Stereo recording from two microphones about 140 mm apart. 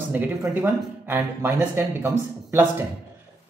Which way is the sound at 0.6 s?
15° right (ahead or behind).